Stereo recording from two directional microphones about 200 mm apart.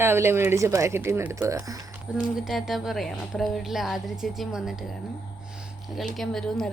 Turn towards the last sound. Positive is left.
turn(degrees=0)  # may be behind; listen again after turning